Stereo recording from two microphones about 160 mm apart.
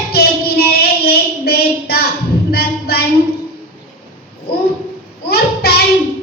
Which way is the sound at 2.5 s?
75° left (ahead or behind).